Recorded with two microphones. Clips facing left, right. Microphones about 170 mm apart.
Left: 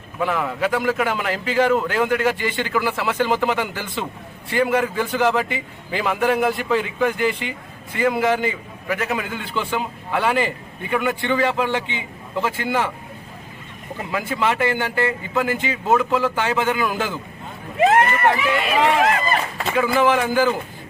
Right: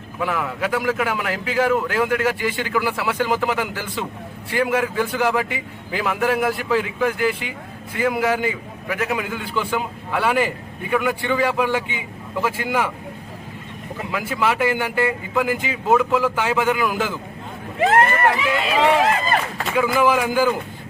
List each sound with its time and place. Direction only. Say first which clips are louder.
0.2 s a man's voice: left 2 dB; 5° right (ahead or behind)
14.1 s a man's voice: even; 5° right (ahead or behind)
18.3 s speech: even; 30° right (ahead or behind)
19.7 s a man's voice: even; 10° right (ahead or behind)